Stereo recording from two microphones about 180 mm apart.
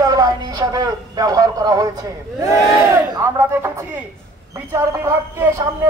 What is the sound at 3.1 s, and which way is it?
A man's voice, 15° right (ahead or behind).